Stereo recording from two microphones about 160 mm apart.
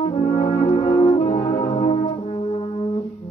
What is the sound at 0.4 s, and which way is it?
Music, 40° left (ahead or behind).